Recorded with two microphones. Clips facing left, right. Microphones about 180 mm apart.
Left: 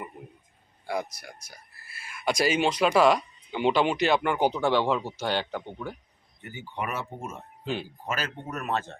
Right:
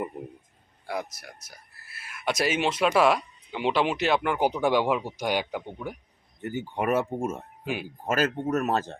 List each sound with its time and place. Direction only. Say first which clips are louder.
0.9 s speech: left 1 dB; 5° right (ahead or behind)
6.4 s speech: right 6 dB; 50° right (ahead or behind)
7.6 s speech: left 1 dB; 10° right (ahead or behind)
8.0 s speech: right 7 dB; 50° right (ahead or behind)